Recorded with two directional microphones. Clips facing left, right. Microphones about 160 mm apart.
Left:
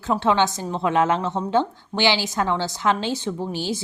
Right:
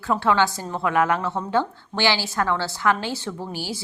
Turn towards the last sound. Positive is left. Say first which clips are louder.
# left 4 dB
turn(degrees=20)  # may be behind; listen again after turning